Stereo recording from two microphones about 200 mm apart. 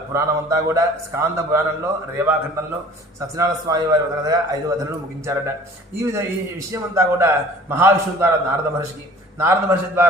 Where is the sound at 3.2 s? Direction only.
15° right (ahead or behind).